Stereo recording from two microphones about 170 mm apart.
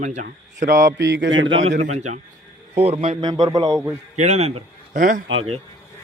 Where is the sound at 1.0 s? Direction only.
90° right.